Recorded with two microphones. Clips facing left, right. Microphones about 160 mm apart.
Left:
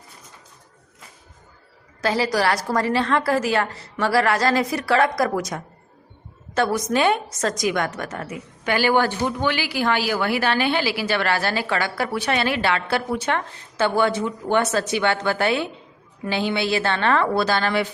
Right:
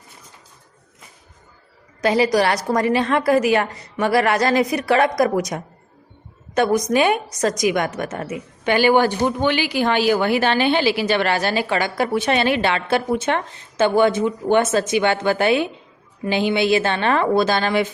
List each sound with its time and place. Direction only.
2.0 s a woman's voice: 20° right (ahead or behind)